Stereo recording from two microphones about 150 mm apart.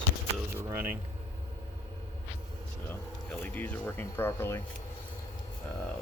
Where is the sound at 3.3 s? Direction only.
10° left (ahead or behind).